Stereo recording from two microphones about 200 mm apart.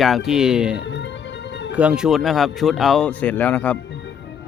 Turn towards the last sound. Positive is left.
turn(degrees=10)  # may be behind; listen again after turning